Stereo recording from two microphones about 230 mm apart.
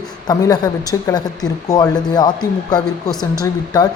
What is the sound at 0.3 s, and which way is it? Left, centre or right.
A woman's voice, centre.